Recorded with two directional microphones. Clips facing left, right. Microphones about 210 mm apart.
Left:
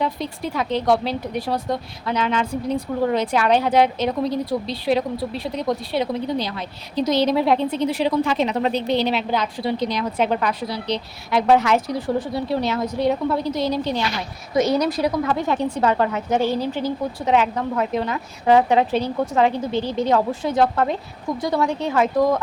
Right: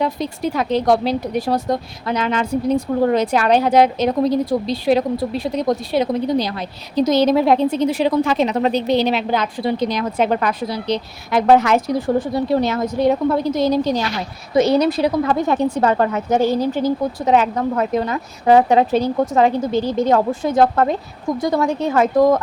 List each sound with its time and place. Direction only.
0.0 s a woman's voice: 40° right (ahead or behind)
14.5 s a woman's voice: 30° right (ahead or behind)
15.3 s a woman's voice: 45° right (ahead or behind)